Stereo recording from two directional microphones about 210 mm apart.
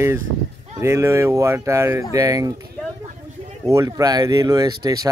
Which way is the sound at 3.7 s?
15° right (ahead or behind).